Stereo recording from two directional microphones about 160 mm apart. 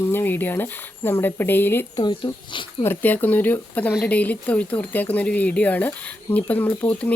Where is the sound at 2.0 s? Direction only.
30° left (ahead or behind).